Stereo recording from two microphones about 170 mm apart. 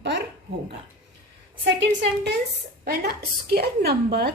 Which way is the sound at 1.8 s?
90° right.